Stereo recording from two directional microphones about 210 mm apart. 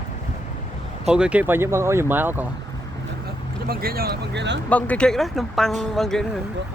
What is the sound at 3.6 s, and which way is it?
Speech, 45° right (ahead or behind).